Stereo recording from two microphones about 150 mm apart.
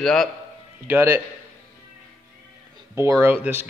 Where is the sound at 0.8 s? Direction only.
15° right (ahead or behind).